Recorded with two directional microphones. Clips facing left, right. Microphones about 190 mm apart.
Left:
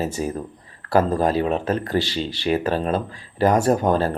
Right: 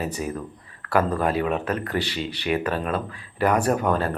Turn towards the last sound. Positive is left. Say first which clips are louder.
# left 4 dB
turn(degrees=35)  # may be behind; listen again after turning